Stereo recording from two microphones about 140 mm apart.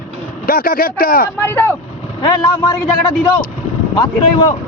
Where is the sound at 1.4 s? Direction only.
15° left (ahead or behind).